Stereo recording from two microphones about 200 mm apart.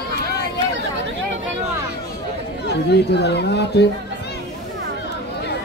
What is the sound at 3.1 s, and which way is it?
Speech, 55° left (ahead or behind).